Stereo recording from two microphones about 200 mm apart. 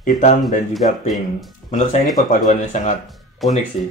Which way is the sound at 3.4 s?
Centre (ahead or behind).